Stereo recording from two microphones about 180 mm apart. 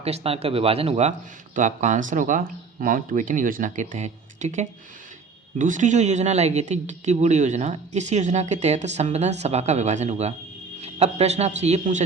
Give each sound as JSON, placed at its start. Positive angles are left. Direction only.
{"t": 0.0, "sound": "speech", "side_deg": -35}